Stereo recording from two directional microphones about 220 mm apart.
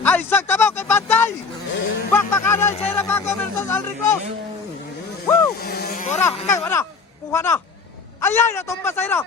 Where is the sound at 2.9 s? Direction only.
10° left (ahead or behind).